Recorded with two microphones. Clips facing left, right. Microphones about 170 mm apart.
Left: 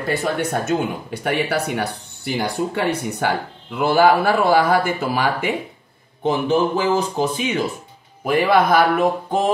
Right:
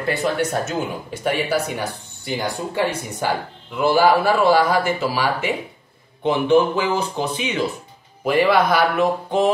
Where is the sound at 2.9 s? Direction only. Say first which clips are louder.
Left 2 dB; 65° left (ahead or behind).